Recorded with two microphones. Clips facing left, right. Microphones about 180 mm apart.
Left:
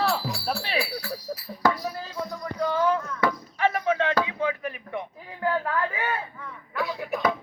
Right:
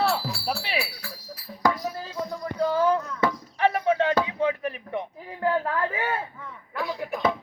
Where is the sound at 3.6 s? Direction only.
30° right (ahead or behind).